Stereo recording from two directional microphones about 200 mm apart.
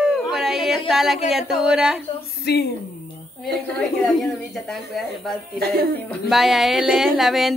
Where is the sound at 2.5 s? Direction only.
55° left (ahead or behind).